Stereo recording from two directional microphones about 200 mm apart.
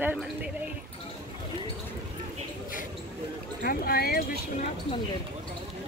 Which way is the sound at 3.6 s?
50° left (ahead or behind).